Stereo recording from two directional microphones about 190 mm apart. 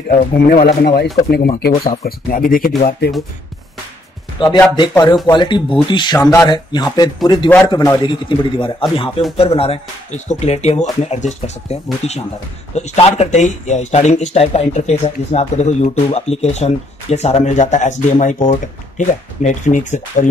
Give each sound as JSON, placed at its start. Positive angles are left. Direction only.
{"t": 0.1, "sound": "speech", "side_deg": 50}
{"t": 4.4, "sound": "speech", "side_deg": 25}